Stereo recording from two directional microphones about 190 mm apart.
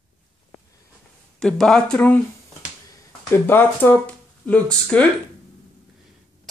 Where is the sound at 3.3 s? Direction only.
10° left (ahead or behind).